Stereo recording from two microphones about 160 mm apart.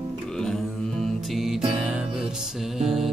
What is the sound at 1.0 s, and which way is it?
Music, centre (ahead or behind).